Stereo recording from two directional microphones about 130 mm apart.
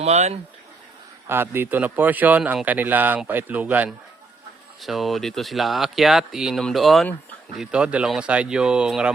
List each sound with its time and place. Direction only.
0.0 s speech: 55° right (ahead or behind)
1.3 s speech: 15° right (ahead or behind)
4.8 s speech: centre (ahead or behind)